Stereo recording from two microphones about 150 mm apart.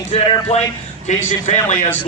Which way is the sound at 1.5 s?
55° left (ahead or behind).